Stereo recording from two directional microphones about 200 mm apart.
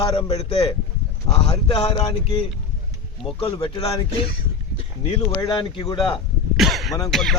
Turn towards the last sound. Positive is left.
turn(degrees=0)  # may be behind; listen again after turning